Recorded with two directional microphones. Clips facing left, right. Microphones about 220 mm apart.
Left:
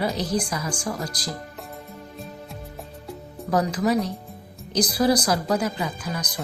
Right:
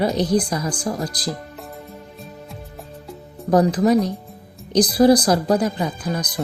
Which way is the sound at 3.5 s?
35° right (ahead or behind).